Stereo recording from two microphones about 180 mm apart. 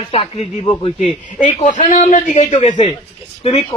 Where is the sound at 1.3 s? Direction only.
45° left (ahead or behind).